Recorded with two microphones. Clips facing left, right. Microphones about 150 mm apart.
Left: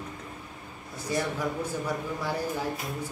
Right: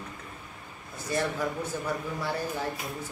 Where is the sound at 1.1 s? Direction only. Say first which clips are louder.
Even; 10° left (ahead or behind).